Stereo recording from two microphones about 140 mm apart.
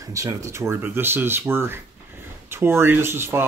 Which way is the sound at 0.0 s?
25° right (ahead or behind).